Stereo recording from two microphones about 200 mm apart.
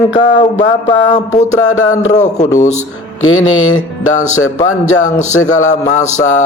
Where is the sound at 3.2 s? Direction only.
90° left.